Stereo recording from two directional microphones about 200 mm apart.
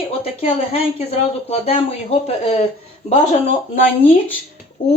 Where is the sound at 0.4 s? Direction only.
35° left (ahead or behind).